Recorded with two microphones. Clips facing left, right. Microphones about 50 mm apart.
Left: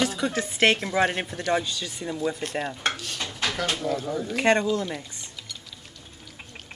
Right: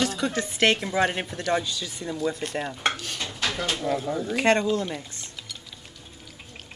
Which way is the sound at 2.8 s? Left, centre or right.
Right.